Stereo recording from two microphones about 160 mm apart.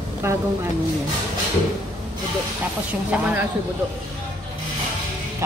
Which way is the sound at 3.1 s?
10° right (ahead or behind).